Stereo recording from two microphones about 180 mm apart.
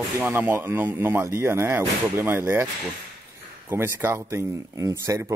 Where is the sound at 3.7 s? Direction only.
15° right (ahead or behind).